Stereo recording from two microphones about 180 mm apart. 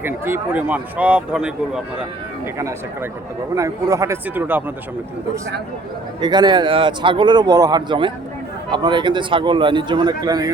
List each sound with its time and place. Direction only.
0.0 s speech: 10° right (ahead or behind)
2.6 s speech: 15° right (ahead or behind)
6.1 s a man's voice: 25° right (ahead or behind)